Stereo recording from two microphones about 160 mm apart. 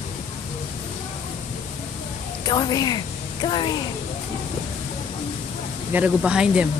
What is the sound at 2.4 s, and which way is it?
A woman's voice, 25° left (ahead or behind).